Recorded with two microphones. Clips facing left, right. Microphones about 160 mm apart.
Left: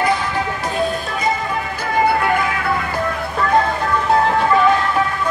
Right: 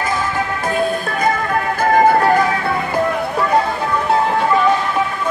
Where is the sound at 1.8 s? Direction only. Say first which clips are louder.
Right 5 dB; 45° right (ahead or behind).